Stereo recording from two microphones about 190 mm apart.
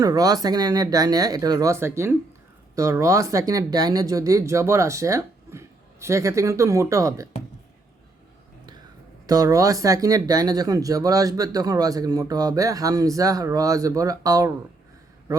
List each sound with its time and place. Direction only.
0.0 s speech: 20° right (ahead or behind)
9.2 s speech: 20° right (ahead or behind)